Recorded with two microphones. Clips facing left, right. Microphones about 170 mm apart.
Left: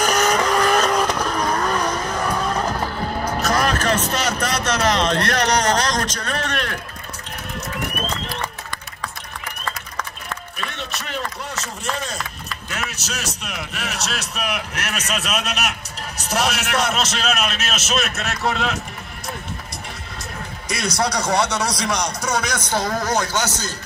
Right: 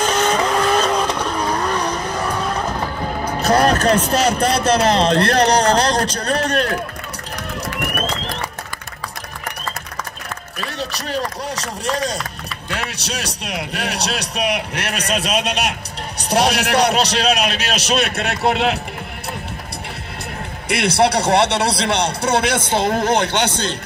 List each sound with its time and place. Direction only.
0.0 s vehicle: 25° right (ahead or behind)
0.7 s vehicle: centre (ahead or behind)
0.9 s vehicle: 30° right (ahead or behind)
1.5 s vehicle: 5° left (ahead or behind)
3.4 s speech: 35° right (ahead or behind)
7.7 s a sound: 85° right
10.8 s speech: 35° right (ahead or behind)
20.7 s speech: 30° right (ahead or behind)